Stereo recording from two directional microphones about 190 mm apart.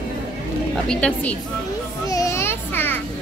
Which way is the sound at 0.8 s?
5° left (ahead or behind).